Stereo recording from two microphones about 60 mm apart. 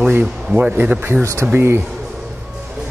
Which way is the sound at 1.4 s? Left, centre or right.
Right.